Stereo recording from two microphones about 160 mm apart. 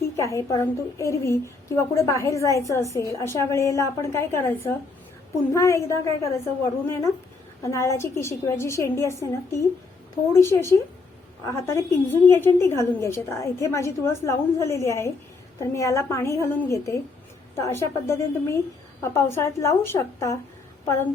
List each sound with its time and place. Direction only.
0.2 s a woman's voice: 20° left (ahead or behind)
7.6 s a woman's voice: 20° left (ahead or behind)